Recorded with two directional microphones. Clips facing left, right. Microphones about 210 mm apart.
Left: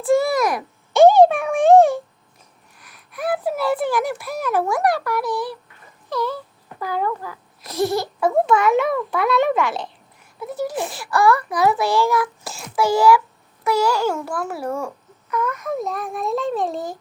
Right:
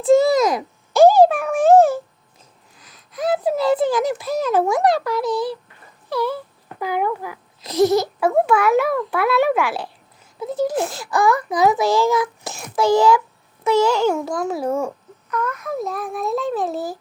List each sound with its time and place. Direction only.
0.0 s a sound: 20° right (ahead or behind)
0.9 s a sound: centre (ahead or behind)
3.1 s a child's voice: 20° right (ahead or behind)
6.1 s a child's voice: 10° right (ahead or behind)
8.4 s speech: 5° right (ahead or behind)
10.4 s a child's voice: 20° right (ahead or behind)
15.3 s speech: 5° left (ahead or behind)